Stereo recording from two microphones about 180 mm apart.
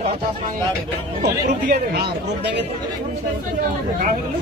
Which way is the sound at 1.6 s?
50° right (ahead or behind).